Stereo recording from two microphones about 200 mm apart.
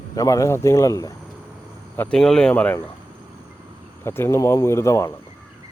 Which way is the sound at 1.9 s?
5° left (ahead or behind).